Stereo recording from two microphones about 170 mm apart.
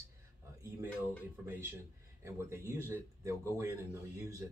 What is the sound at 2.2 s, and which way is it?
Speech, 15° right (ahead or behind).